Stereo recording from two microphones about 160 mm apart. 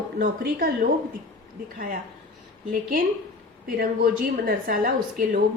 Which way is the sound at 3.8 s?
65° right (ahead or behind).